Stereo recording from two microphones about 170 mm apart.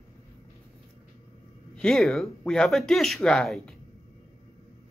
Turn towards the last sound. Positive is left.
turn(degrees=5)  # may be behind; listen again after turning